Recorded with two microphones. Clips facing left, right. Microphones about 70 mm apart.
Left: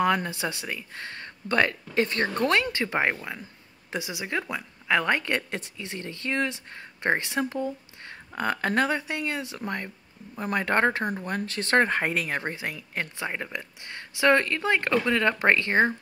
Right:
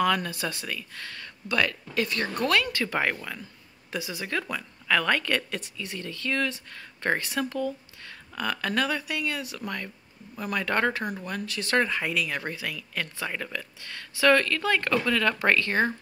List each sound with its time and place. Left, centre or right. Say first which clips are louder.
0.0 s a woman's voice: left 1 dB; left